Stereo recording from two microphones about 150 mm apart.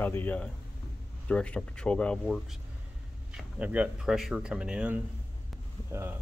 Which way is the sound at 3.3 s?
10° right (ahead or behind).